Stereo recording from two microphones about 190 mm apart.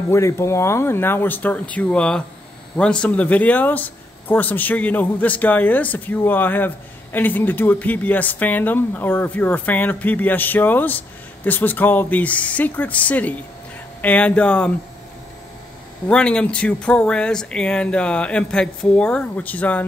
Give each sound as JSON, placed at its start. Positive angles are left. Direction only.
{"t": 0.1, "sound": "speech", "side_deg": 15}
{"t": 16.1, "sound": "speech", "side_deg": 5}